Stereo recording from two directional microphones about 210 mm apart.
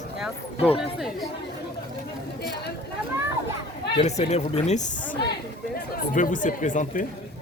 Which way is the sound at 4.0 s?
30° left (ahead or behind).